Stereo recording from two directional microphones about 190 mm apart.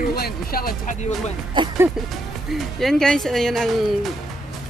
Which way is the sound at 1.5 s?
15° right (ahead or behind).